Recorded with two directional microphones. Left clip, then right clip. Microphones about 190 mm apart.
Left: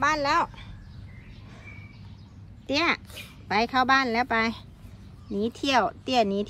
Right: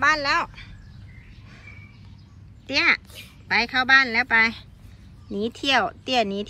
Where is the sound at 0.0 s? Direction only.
10° left (ahead or behind).